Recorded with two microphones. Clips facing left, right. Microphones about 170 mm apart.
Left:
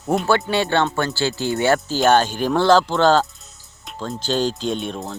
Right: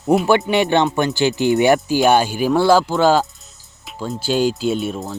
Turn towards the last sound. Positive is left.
turn(degrees=-5)  # may be behind; listen again after turning